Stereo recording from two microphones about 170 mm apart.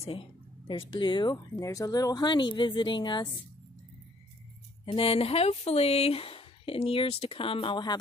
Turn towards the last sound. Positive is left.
turn(degrees=25)  # may be behind; listen again after turning